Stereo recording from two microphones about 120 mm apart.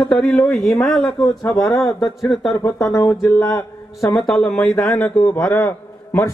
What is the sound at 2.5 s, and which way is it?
A man's voice, 25° left (ahead or behind).